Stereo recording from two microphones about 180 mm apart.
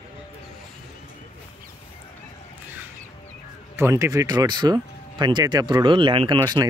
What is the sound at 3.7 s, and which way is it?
Speech, 15° right (ahead or behind).